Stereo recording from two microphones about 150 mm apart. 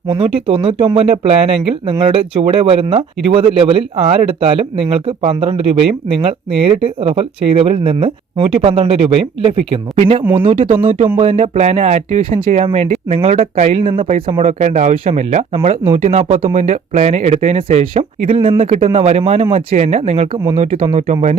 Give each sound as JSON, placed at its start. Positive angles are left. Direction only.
{"t": 0.1, "sound": "speech", "side_deg": -35}